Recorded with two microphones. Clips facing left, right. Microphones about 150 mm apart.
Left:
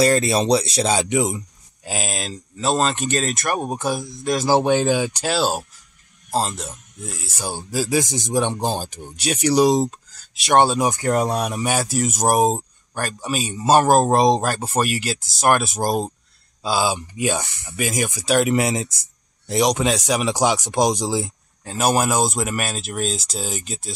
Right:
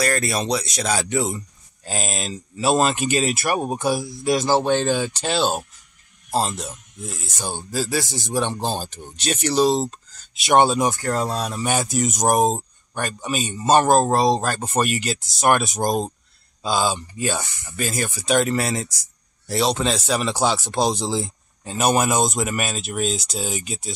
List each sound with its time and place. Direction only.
0.0 s speech: 25° left (ahead or behind)
1.9 s speech: centre (ahead or behind)
4.5 s speech: 10° left (ahead or behind)
10.3 s speech: centre (ahead or behind)
10.9 s speech: 20° left (ahead or behind)
11.6 s speech: 5° left (ahead or behind)
14.5 s speech: 5° left (ahead or behind)
18.5 s speech: 20° left (ahead or behind)
21.6 s speech: centre (ahead or behind)